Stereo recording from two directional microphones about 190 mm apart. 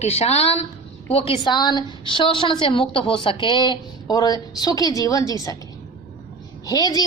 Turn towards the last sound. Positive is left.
turn(degrees=20)  # may be behind; listen again after turning